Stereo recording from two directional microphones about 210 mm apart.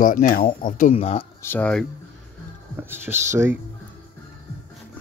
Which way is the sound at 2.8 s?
10° right (ahead or behind).